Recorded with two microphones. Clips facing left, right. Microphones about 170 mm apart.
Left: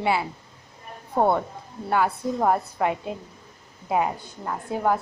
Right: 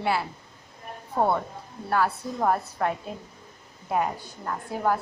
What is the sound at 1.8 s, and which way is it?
A woman's voice, 15° left (ahead or behind).